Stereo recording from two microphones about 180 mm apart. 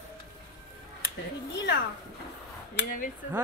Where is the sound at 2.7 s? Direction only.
50° left (ahead or behind).